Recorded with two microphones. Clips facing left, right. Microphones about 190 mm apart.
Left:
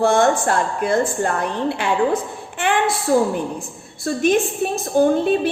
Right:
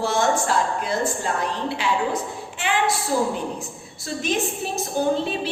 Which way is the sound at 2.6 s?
55° left (ahead or behind).